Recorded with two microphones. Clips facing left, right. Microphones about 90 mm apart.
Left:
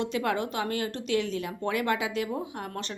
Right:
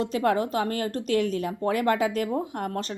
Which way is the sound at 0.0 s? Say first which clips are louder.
Right 4 dB; 40° right (ahead or behind).